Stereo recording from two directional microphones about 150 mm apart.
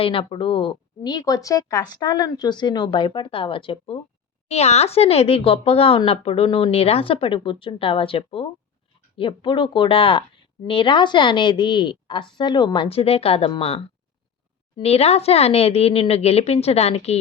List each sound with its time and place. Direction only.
0.0 s a woman's voice: 35° left (ahead or behind)